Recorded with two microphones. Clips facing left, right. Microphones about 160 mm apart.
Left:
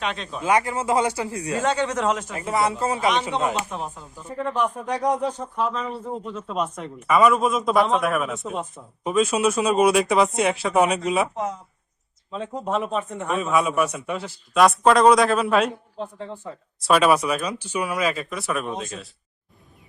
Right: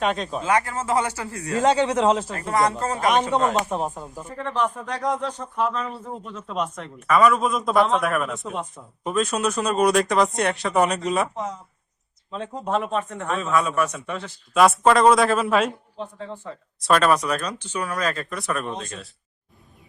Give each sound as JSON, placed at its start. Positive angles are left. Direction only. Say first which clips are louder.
{"t": 0.0, "sound": "speech", "louder": "right 5 dB", "side_deg": -45}
{"t": 0.4, "sound": "speech", "louder": "left 2 dB", "side_deg": 15}
{"t": 1.6, "sound": "speech", "louder": "right 5 dB", "side_deg": -30}
{"t": 2.3, "sound": "speech", "louder": "right 1 dB", "side_deg": 5}
{"t": 3.7, "sound": "speech", "louder": "right 5 dB", "side_deg": -45}
{"t": 4.3, "sound": "speech", "louder": "left 1 dB", "side_deg": 10}
{"t": 5.5, "sound": "speech", "louder": "right 4 dB", "side_deg": 0}
{"t": 12.3, "sound": "speech", "louder": "even", "side_deg": 5}
{"t": 16.8, "sound": "speech", "louder": "left 1 dB", "side_deg": 10}